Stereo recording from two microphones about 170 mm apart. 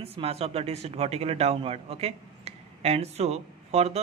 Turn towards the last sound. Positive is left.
turn(degrees=-40)  # may be behind; listen again after turning